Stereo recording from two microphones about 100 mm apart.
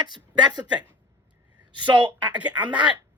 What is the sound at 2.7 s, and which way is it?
Speech, 50° right (ahead or behind).